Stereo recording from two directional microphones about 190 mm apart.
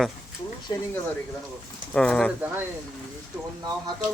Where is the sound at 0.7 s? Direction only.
25° left (ahead or behind).